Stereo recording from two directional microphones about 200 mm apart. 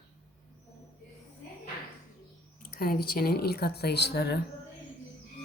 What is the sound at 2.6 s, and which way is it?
Speech, 45° left (ahead or behind).